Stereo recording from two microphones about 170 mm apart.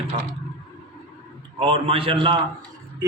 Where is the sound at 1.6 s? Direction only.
35° right (ahead or behind).